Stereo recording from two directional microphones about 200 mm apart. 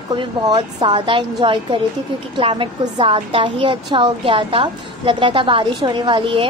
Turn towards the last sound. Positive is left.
turn(degrees=-25)  # may be behind; listen again after turning